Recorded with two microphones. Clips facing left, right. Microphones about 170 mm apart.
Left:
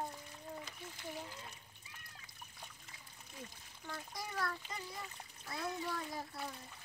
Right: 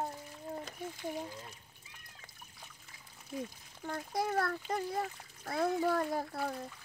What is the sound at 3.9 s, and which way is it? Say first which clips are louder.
A child's voice: right 11 dB; 60° right (ahead or behind).